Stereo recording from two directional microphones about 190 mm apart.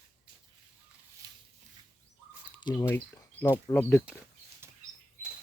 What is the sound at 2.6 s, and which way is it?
Speech, 15° left (ahead or behind).